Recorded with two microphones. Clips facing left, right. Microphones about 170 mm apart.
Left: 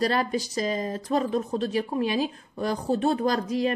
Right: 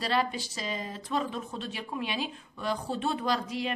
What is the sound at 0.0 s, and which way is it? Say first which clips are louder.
A woman's voice: left 5 dB; 45° left (ahead or behind).